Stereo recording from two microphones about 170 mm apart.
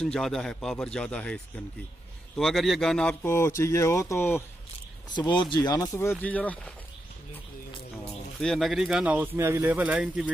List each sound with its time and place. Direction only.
0.0 s a man's voice: 5° left (ahead or behind)
5.1 s speech: 25° left (ahead or behind); by 6.7 s 10° left (ahead or behind)
8.4 s speech: centre (ahead or behind)